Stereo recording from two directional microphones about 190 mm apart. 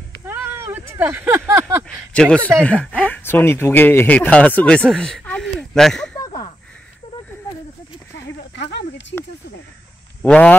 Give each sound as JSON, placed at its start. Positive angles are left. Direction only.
{"t": 0.2, "sound": "speech", "side_deg": -10}
{"t": 2.1, "sound": "speech", "side_deg": 5}
{"t": 6.1, "sound": "a sound", "side_deg": 20}
{"t": 8.4, "sound": "snake", "side_deg": 65}
{"t": 10.2, "sound": "speech", "side_deg": 5}